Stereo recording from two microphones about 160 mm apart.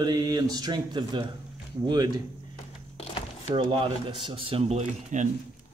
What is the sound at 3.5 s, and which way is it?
Speech, 30° right (ahead or behind).